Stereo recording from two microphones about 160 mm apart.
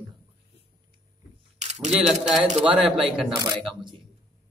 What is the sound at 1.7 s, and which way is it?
Camera, 45° right (ahead or behind).